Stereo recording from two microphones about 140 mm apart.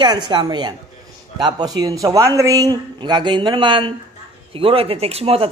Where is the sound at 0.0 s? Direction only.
30° right (ahead or behind).